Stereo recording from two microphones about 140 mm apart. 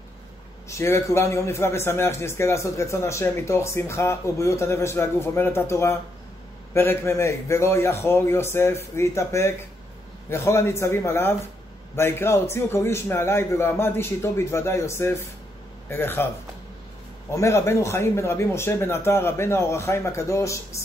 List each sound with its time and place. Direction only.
0.7 s a man's voice: 20° left (ahead or behind)
17.3 s a man's voice: 20° left (ahead or behind)